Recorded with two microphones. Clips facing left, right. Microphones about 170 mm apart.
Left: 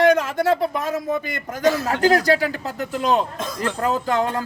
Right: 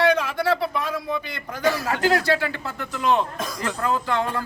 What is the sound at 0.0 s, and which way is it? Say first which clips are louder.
A man's voice: left 4 dB; 45° left (ahead or behind).